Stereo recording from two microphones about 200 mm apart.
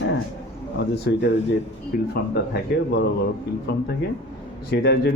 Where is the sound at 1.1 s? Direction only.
55° left (ahead or behind).